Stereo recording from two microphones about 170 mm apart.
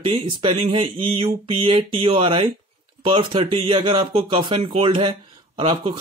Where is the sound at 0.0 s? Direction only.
25° right (ahead or behind).